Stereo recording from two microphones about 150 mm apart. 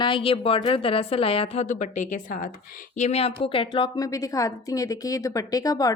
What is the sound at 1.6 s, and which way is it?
Speech, 55° left (ahead or behind).